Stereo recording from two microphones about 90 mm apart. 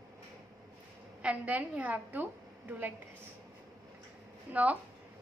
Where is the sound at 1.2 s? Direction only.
15° right (ahead or behind).